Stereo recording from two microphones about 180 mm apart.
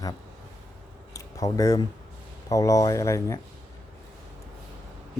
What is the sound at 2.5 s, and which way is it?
Speech, 20° left (ahead or behind).